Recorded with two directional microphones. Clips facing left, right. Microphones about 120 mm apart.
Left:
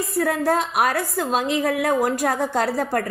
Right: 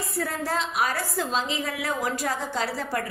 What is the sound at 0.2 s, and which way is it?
A woman's voice, 55° left (ahead or behind).